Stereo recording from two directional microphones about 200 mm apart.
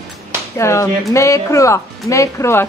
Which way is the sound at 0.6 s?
15° left (ahead or behind).